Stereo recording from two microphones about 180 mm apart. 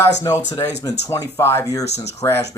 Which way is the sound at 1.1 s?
15° left (ahead or behind).